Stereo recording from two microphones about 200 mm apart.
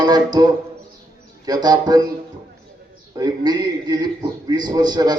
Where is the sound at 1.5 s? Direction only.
20° right (ahead or behind).